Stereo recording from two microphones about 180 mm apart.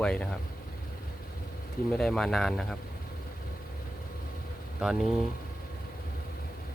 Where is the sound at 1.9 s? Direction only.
5° left (ahead or behind).